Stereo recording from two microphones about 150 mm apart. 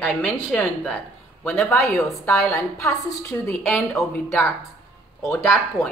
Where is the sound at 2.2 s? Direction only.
15° left (ahead or behind).